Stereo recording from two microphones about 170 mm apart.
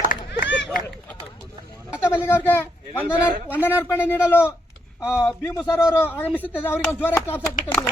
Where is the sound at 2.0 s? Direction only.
15° left (ahead or behind).